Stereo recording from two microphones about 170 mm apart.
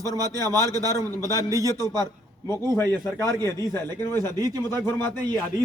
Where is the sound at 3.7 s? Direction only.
15° left (ahead or behind).